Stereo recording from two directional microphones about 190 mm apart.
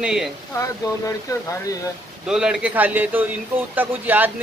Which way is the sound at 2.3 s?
5° right (ahead or behind).